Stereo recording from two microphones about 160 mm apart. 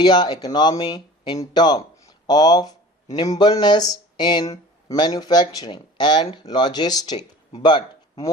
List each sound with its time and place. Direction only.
0.0 s speech: 25° left (ahead or behind)